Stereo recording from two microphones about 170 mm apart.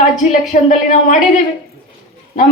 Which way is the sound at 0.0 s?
45° left (ahead or behind).